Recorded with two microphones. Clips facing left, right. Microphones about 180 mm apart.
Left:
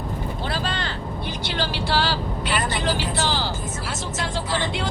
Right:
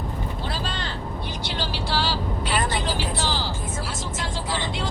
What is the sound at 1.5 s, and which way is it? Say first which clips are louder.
Vehicle: left 4 dB; 65° left (ahead or behind).